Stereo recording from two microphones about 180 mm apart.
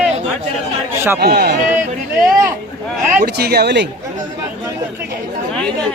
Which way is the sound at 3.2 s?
60° right (ahead or behind).